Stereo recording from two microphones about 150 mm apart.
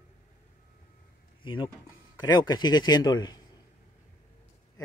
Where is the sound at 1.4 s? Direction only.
35° left (ahead or behind).